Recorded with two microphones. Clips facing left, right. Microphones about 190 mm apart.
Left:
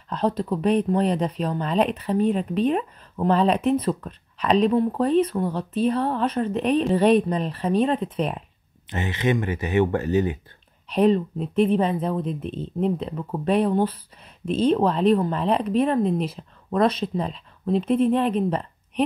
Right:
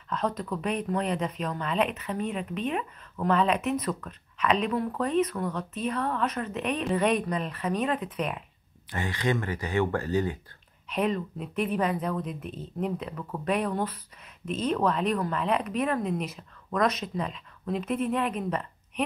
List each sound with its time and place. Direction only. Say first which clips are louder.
0.1 s speech: left 6 dB; 30° left (ahead or behind)
8.8 s speech: left 5 dB; 20° left (ahead or behind)
10.9 s speech: left 9 dB; 30° left (ahead or behind)